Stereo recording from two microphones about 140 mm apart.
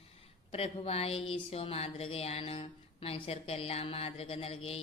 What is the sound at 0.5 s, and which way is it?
A woman's voice, 45° left (ahead or behind).